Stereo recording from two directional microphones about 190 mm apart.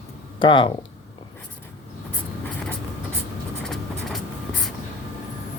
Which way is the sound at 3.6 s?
5° left (ahead or behind).